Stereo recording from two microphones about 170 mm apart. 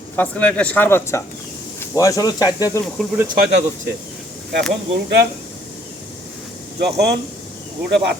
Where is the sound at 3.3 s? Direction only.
75° right (ahead or behind).